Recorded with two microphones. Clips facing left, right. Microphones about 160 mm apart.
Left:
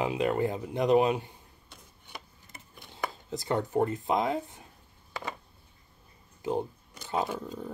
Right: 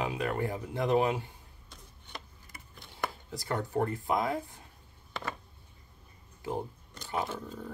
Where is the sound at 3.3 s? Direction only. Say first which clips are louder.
Left 5 dB; 20° left (ahead or behind).